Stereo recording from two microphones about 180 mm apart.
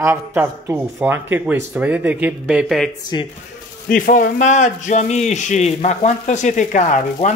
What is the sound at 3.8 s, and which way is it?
A man's voice, 50° left (ahead or behind).